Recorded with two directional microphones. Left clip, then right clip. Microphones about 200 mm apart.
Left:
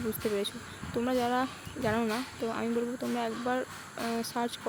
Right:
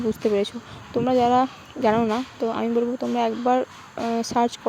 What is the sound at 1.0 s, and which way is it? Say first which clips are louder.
Speech: right 11 dB; 35° right (ahead or behind).